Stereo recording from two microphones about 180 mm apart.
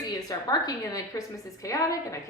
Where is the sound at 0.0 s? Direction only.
20° left (ahead or behind).